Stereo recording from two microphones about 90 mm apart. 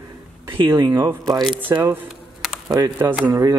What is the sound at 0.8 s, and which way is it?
Speech, 25° right (ahead or behind).